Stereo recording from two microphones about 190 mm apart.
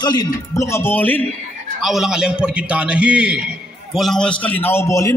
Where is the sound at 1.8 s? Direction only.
Centre (ahead or behind); by 5.1 s 15° left (ahead or behind).